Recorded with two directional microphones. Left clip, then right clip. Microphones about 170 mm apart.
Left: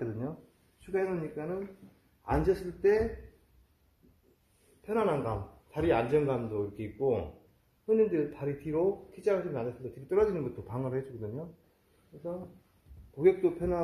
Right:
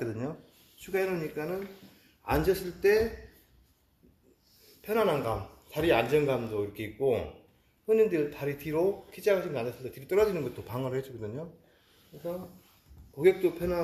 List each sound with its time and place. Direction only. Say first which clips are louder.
0.9 s speech: right 2 dB; 5° right (ahead or behind)
4.8 s speech: right 3 dB; 5° left (ahead or behind)
10.7 s speech: right 2 dB; 5° left (ahead or behind)
13.2 s speech: right 1 dB; 15° left (ahead or behind)